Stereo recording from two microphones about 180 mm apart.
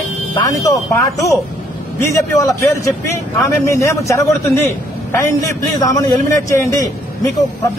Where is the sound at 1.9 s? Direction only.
15° left (ahead or behind).